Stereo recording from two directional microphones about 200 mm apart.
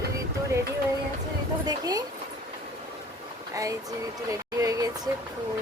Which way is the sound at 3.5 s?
15° right (ahead or behind).